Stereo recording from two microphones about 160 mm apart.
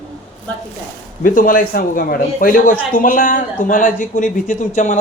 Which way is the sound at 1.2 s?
60° left (ahead or behind).